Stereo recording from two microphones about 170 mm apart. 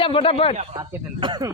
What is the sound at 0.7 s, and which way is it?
Speech, 25° right (ahead or behind).